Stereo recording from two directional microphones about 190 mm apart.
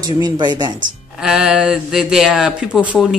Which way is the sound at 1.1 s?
5° right (ahead or behind).